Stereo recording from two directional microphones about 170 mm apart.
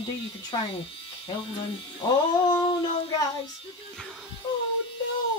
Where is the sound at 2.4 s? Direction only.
30° left (ahead or behind).